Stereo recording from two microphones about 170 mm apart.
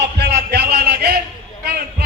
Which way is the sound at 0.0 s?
75° right (ahead or behind).